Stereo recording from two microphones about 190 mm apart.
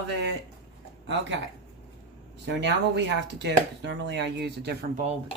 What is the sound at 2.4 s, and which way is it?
Speech, 65° right (ahead or behind).